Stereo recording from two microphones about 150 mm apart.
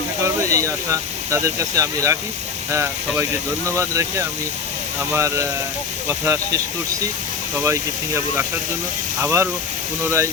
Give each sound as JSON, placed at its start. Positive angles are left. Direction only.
{"t": 0.5, "sound": "speech", "side_deg": -20}
{"t": 7.6, "sound": "speech", "side_deg": -20}